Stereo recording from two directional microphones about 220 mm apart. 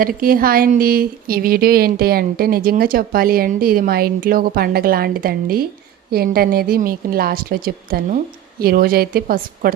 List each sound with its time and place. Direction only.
0.0 s a woman's voice: 40° right (ahead or behind)